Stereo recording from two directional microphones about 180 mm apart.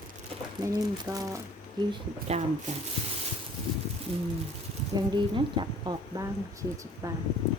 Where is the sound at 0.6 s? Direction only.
20° right (ahead or behind).